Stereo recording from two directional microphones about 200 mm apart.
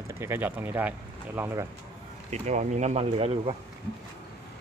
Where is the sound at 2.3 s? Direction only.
35° right (ahead or behind).